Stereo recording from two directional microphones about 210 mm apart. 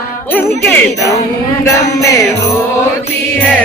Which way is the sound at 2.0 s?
15° left (ahead or behind).